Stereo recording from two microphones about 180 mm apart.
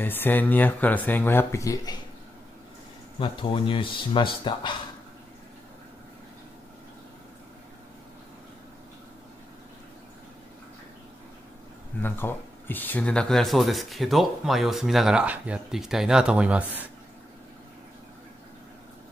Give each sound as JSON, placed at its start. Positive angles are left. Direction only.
{"t": 0.0, "sound": "speech", "side_deg": 10}
{"t": 3.2, "sound": "speech", "side_deg": 30}
{"t": 12.0, "sound": "speech", "side_deg": 10}